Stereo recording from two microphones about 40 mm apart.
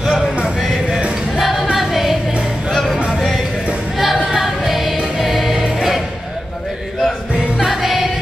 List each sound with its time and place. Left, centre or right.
1.3 s music: centre
2.7 s music: centre
4.0 s music: centre
7.6 s music: centre